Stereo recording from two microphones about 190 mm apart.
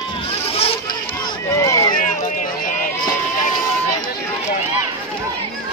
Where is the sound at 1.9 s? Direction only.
45° left (ahead or behind).